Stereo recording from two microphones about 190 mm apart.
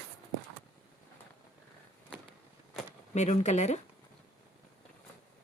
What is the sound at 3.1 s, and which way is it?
Speech, 40° left (ahead or behind).